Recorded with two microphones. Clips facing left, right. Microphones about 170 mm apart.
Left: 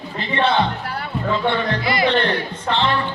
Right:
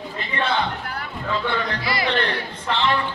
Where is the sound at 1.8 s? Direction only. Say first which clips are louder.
Left 5 dB; 20° left (ahead or behind).